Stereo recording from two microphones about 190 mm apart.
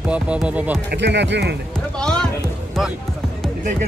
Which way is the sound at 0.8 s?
65° right (ahead or behind).